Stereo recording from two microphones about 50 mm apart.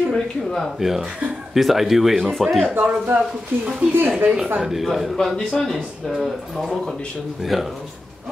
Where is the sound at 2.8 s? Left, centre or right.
Right.